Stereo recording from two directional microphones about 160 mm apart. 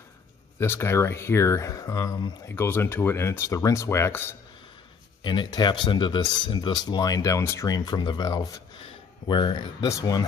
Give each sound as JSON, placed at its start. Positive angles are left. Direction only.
{"t": 0.6, "sound": "speech", "side_deg": 15}
{"t": 5.2, "sound": "speech", "side_deg": 30}